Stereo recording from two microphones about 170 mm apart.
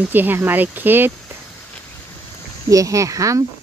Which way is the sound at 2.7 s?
20° right (ahead or behind).